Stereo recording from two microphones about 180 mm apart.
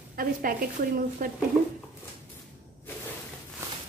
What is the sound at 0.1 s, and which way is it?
A woman's voice, 55° right (ahead or behind).